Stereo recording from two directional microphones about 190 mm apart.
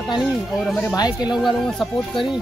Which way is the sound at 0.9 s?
20° left (ahead or behind).